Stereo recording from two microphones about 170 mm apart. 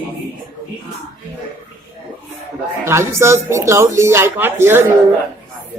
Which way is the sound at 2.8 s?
15° right (ahead or behind).